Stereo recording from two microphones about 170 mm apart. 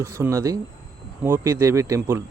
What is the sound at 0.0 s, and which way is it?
Speech, 15° right (ahead or behind).